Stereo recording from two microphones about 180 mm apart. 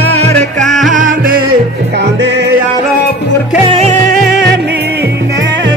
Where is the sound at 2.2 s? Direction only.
75° right (ahead or behind).